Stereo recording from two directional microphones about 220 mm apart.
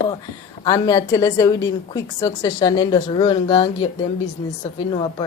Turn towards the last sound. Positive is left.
turn(degrees=20)  # may be behind; listen again after turning